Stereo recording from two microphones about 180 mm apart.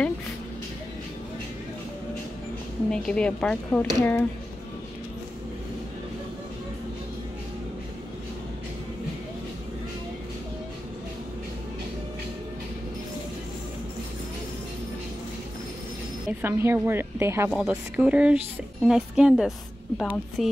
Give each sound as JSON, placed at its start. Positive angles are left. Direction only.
{"t": 2.9, "sound": "a woman's voice", "side_deg": 5}
{"t": 16.3, "sound": "speech", "side_deg": -10}
{"t": 17.5, "sound": "a woman's voice", "side_deg": -5}